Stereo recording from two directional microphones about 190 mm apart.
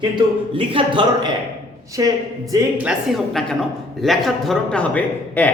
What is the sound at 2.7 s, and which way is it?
A woman's voice, 5° right (ahead or behind).